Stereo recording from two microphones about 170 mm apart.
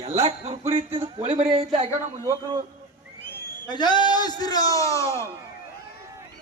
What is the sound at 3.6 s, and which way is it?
A man's voice, 25° left (ahead or behind).